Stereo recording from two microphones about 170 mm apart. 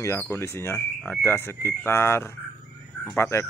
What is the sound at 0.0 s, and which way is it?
Speech, 15° left (ahead or behind).